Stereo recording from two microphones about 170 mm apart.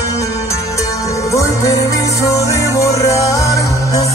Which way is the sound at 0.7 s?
20° left (ahead or behind).